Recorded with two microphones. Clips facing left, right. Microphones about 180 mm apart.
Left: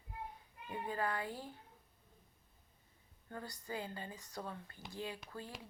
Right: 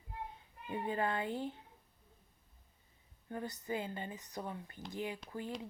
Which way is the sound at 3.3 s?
20° right (ahead or behind).